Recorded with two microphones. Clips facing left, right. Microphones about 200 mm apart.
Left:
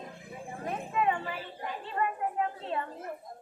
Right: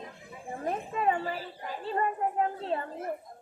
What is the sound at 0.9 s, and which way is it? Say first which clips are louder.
A woman's voice: even; 35° right (ahead or behind).